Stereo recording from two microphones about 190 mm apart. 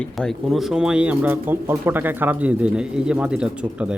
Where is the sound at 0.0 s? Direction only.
Centre (ahead or behind).